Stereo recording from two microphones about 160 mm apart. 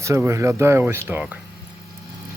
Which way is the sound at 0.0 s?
20° right (ahead or behind).